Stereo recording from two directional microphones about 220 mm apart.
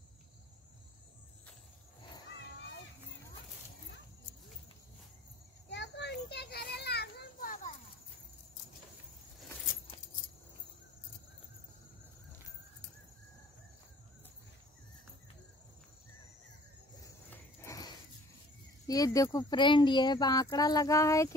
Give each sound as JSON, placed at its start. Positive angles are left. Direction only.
{"t": 5.7, "sound": "children playing", "side_deg": 50}
{"t": 17.0, "sound": "a sound", "side_deg": 10}
{"t": 18.9, "sound": "speech", "side_deg": 15}